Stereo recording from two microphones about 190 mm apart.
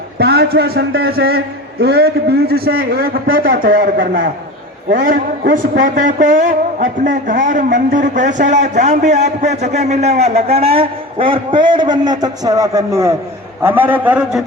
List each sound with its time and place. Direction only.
0.2 s a man's voice: 55° right (ahead or behind); by 14.4 s 10° right (ahead or behind)